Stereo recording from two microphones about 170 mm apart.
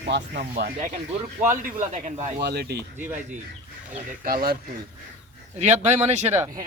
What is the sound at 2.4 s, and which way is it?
Speech, 80° right.